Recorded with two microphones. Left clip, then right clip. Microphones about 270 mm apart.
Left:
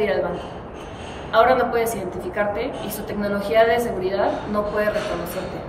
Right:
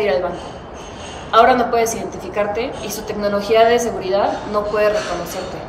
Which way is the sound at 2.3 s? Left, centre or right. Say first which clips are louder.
Right 4 dB; centre.